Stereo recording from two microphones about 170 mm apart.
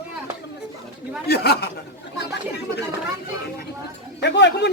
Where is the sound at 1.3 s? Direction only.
70° left (ahead or behind).